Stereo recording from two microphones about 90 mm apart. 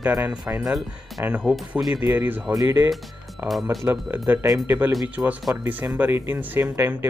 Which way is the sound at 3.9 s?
30° right (ahead or behind).